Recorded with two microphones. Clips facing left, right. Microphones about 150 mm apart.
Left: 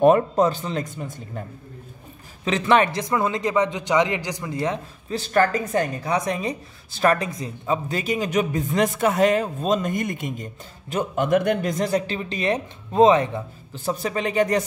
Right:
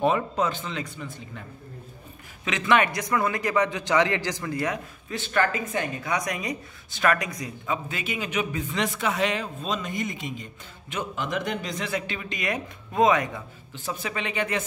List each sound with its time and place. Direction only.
0.0 s speech: 45° left (ahead or behind)
2.4 s a man's voice: 35° left (ahead or behind)
5.1 s speech: 40° left (ahead or behind)